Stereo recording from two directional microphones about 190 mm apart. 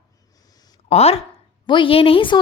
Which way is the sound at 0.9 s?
30° left (ahead or behind).